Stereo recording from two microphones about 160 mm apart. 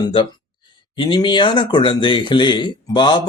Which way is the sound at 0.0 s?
30° left (ahead or behind).